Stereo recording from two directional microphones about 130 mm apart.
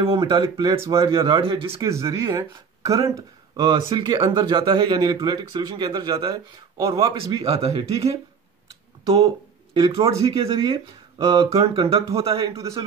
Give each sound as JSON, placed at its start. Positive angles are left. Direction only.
{"t": 0.3, "sound": "speech", "side_deg": -35}
{"t": 1.8, "sound": "speech", "side_deg": -25}
{"t": 7.4, "sound": "speech", "side_deg": -50}
{"t": 9.8, "sound": "speech", "side_deg": -45}
{"t": 10.1, "sound": "speech", "side_deg": -30}
{"t": 11.5, "sound": "speech", "side_deg": -45}
{"t": 12.5, "sound": "speech", "side_deg": -25}